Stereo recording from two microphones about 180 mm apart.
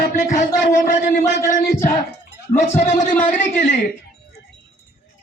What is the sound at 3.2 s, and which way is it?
Speech, 45° left (ahead or behind).